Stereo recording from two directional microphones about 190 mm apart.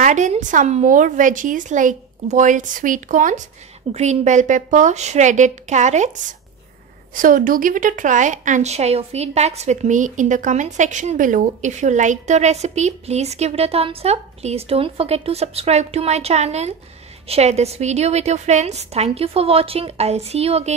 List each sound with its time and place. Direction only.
0.0 s a woman's voice: 40° right (ahead or behind)